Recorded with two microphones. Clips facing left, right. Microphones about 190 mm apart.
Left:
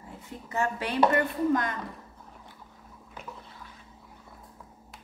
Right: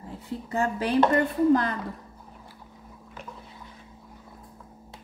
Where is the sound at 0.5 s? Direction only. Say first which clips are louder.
Right 4 dB; 35° right (ahead or behind).